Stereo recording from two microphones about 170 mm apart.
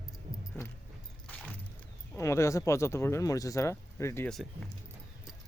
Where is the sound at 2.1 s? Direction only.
15° left (ahead or behind).